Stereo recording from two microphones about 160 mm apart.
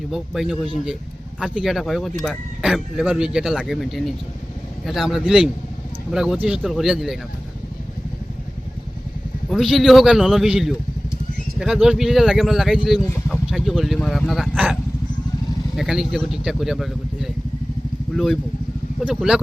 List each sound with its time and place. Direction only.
0.1 s speech: centre (ahead or behind)
9.5 s speech: centre (ahead or behind)
19.0 s speech: 5° right (ahead or behind)